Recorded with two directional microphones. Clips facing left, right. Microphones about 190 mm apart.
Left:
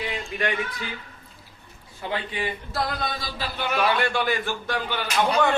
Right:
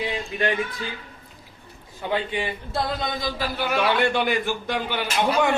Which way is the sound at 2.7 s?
20° right (ahead or behind).